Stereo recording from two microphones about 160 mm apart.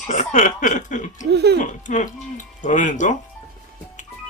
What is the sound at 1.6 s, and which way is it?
Speech, 50° left (ahead or behind).